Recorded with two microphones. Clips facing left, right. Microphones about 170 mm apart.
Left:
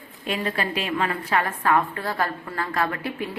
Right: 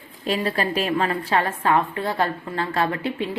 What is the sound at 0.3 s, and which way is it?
A woman's voice, 35° right (ahead or behind).